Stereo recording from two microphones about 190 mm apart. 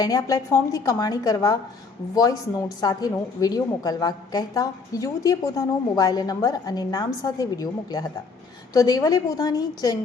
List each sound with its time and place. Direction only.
0.0 s a woman's voice: 20° left (ahead or behind)
2.8 s a woman's voice: 20° left (ahead or behind)